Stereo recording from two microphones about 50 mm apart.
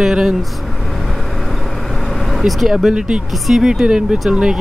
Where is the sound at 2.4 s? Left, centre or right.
Centre.